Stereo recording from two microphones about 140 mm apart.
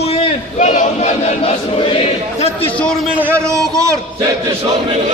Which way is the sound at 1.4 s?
40° left (ahead or behind).